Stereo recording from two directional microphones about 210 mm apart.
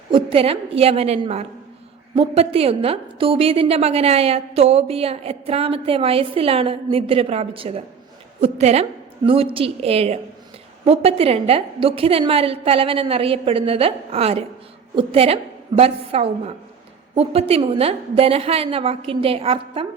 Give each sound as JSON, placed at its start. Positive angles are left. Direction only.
{"t": 0.1, "sound": "a woman's voice", "side_deg": -25}